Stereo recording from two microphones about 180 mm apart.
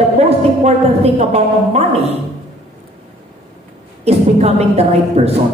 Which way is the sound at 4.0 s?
35° right (ahead or behind).